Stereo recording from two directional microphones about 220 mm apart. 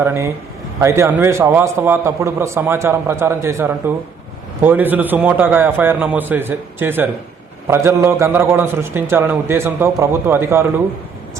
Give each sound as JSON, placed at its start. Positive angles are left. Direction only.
{"t": 0.0, "sound": "a man's voice", "side_deg": -10}